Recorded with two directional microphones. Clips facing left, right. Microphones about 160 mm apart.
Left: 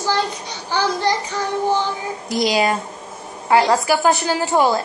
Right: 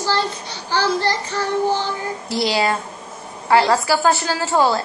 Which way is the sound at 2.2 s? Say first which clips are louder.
Left 2 dB; 20° left (ahead or behind).